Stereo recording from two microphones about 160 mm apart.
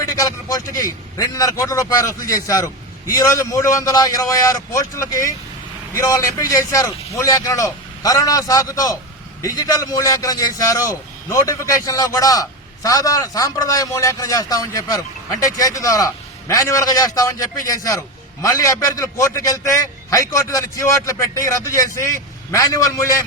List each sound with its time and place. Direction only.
0.0 s a man's voice: 20° left (ahead or behind)